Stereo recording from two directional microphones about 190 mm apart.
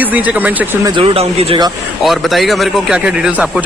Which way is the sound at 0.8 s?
30° right (ahead or behind).